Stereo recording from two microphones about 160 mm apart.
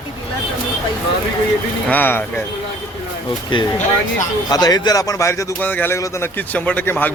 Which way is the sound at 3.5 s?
30° left (ahead or behind).